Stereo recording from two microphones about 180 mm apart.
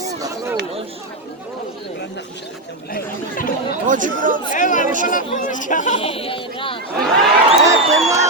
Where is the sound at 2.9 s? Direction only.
50° left (ahead or behind).